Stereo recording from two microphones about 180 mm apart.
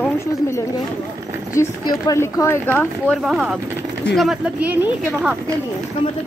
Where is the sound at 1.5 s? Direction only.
15° left (ahead or behind).